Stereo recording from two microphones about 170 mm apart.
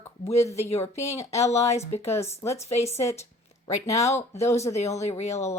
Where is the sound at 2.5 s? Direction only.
40° left (ahead or behind).